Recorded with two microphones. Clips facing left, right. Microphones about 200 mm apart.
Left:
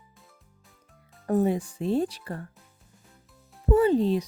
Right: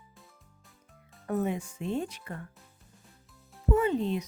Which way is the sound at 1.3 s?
35° left (ahead or behind).